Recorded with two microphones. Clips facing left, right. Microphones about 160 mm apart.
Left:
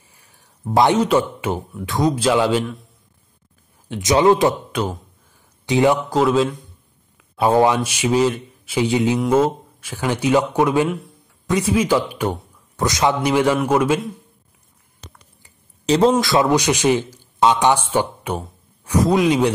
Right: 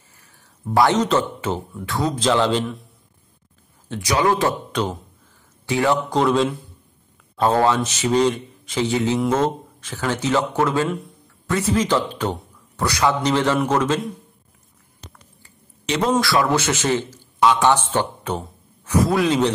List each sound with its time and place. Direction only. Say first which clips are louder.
0.1 s speech: even; 15° left (ahead or behind)
3.9 s a man's voice: left 5 dB; 20° left (ahead or behind)
5.7 s speech: left 4 dB; 20° left (ahead or behind)
6.0 s a man's voice: left 2 dB; 5° left (ahead or behind)
15.8 s a man's voice: left 6 dB; 30° left (ahead or behind)
16.2 s a man's voice: left 2 dB; 20° left (ahead or behind)
17.4 s a man's voice: left 1 dB; 25° left (ahead or behind)
17.6 s a man's voice: left 1 dB; 10° left (ahead or behind)